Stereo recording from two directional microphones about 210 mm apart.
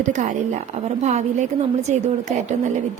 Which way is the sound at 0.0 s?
35° right (ahead or behind).